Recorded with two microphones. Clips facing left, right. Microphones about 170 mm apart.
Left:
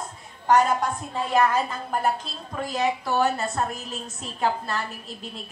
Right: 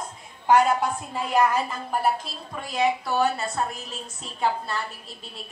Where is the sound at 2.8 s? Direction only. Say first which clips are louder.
Right 1 dB; centre (ahead or behind).